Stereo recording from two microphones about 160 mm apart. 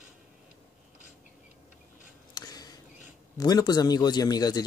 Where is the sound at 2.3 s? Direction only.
25° left (ahead or behind).